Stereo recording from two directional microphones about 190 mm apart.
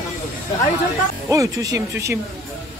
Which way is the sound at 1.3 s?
15° right (ahead or behind).